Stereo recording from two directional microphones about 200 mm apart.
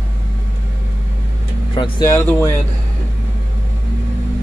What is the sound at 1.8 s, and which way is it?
Speech, 15° left (ahead or behind).